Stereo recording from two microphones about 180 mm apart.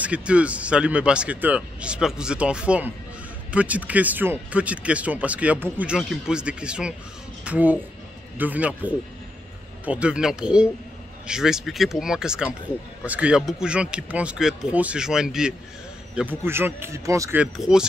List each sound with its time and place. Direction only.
0.0 s speech: 5° right (ahead or behind)